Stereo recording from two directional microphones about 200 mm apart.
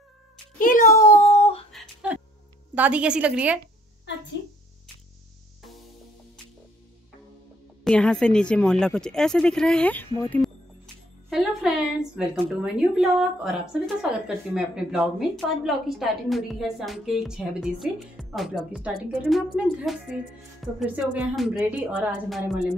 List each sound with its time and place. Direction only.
0.6 s a child's voice: 40° left (ahead or behind)
1.2 s a sound: 30° left (ahead or behind)
1.7 s a sound: centre (ahead or behind)
2.7 s a woman's voice: 5° right (ahead or behind)
7.8 s a woman's voice: 5° left (ahead or behind)
11.2 s a woman's voice: centre (ahead or behind)